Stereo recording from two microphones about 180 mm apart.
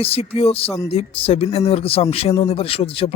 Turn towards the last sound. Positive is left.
turn(degrees=30)  # may be behind; listen again after turning